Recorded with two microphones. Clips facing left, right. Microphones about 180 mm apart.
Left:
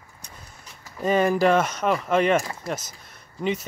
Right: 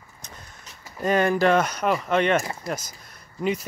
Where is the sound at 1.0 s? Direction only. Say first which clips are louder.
Left 1 dB; centre (ahead or behind).